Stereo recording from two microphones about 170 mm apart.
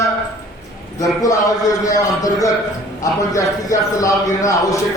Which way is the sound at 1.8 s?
20° left (ahead or behind).